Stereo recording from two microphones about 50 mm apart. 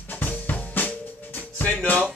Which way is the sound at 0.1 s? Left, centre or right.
Left.